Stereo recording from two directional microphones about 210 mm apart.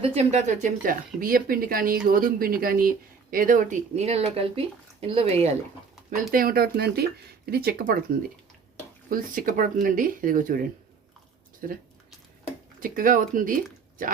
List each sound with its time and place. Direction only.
0.0 s speech: 30° right (ahead or behind)
6.1 s speech: 40° right (ahead or behind)
9.0 s speech: 40° right (ahead or behind)
12.8 s speech: 40° right (ahead or behind)